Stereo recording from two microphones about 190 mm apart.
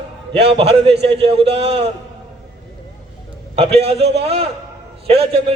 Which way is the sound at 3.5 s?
35° right (ahead or behind).